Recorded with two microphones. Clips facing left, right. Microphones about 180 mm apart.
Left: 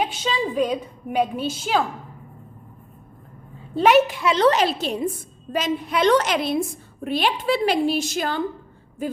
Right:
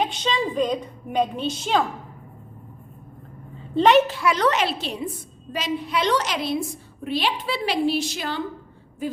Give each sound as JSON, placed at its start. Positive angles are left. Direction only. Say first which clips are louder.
{"t": 0.0, "sound": "a woman's voice", "louder": "even", "side_deg": 5}
{"t": 3.8, "sound": "a woman's voice", "louder": "even", "side_deg": 10}